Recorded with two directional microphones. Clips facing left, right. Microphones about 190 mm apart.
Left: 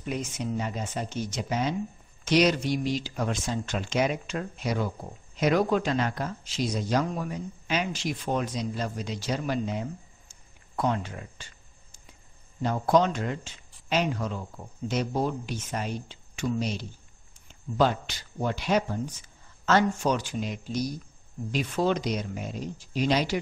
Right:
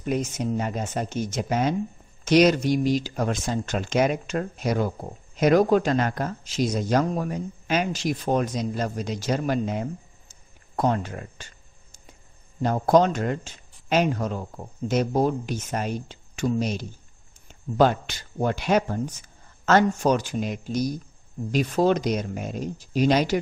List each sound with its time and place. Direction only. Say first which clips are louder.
0.0 s speech: right 6 dB; 45° right (ahead or behind)
12.6 s speech: right 4 dB; 45° right (ahead or behind)